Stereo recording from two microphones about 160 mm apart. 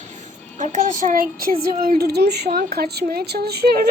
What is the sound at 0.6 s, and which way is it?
Speech, 50° right (ahead or behind).